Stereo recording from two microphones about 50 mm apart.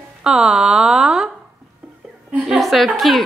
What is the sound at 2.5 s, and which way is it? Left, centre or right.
Speech, centre.